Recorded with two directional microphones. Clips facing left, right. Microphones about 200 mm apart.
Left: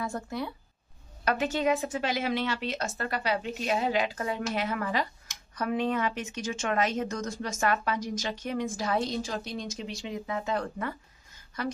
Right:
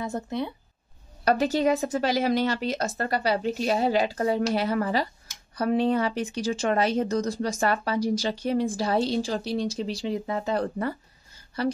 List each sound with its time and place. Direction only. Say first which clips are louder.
0.0 s speech: right 4 dB; 20° right (ahead or behind)
1.2 s speech: right 5 dB; 35° right (ahead or behind)